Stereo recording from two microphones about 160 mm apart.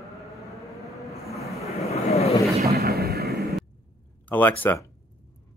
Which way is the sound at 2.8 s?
75° right (ahead or behind).